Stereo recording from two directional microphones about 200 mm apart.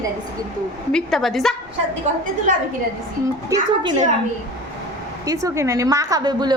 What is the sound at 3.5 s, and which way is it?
Speech, 15° right (ahead or behind).